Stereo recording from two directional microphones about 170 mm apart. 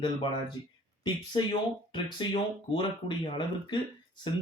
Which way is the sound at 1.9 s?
30° left (ahead or behind).